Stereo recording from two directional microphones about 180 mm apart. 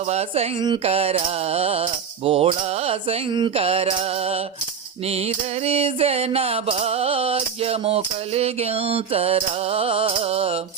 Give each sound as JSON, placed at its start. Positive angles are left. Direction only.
{"t": 0.0, "sound": "mantra", "side_deg": -35}